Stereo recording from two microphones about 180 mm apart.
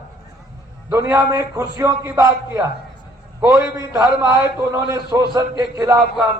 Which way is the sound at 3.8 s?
20° right (ahead or behind).